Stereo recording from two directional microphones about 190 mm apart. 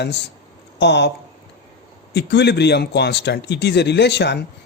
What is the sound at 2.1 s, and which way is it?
Speech, 60° left (ahead or behind).